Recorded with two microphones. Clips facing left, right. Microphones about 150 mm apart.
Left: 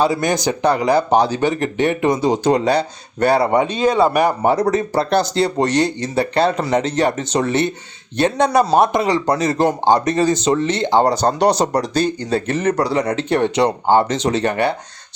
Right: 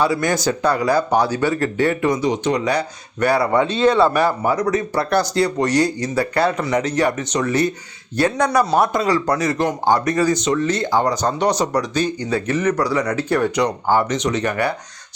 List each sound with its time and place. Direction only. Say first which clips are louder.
0.0 s a man's voice: left 1 dB; 20° left (ahead or behind)
4.7 s a man's voice: left 2 dB; 30° left (ahead or behind)